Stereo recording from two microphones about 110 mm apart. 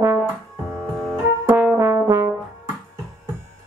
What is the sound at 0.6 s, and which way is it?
Music, centre (ahead or behind).